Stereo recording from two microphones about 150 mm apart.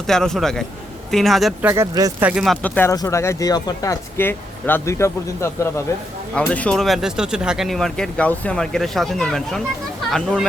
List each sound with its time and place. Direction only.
0.1 s speech: 5° left (ahead or behind)
1.7 s speech: 25° right (ahead or behind)
2.2 s speech: 5° right (ahead or behind)
2.6 s speech: 10° left (ahead or behind)
6.3 s speech: 10° left (ahead or behind)